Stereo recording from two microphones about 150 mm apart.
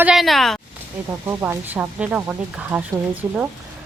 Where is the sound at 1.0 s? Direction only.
15° right (ahead or behind).